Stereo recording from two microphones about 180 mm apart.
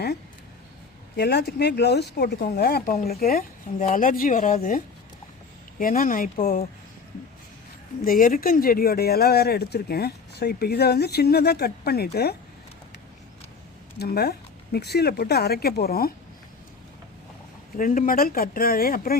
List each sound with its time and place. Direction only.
1.1 s speech: 65° left (ahead or behind); by 4.8 s 50° left (ahead or behind)
5.8 s speech: 50° left (ahead or behind)
8.0 s speech: 50° left (ahead or behind)
14.0 s speech: 60° left (ahead or behind)
17.7 s speech: 50° left (ahead or behind)